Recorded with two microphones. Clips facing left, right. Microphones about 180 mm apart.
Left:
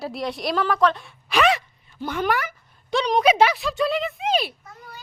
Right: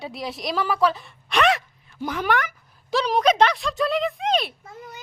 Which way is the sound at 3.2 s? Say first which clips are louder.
Left 1 dB; 10° left (ahead or behind).